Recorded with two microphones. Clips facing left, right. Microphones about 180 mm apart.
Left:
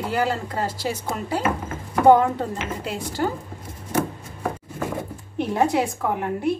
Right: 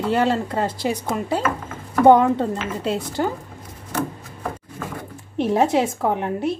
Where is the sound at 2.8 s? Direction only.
25° right (ahead or behind).